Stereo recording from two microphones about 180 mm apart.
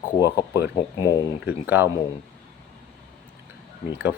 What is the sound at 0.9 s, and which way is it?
Speech, 20° left (ahead or behind).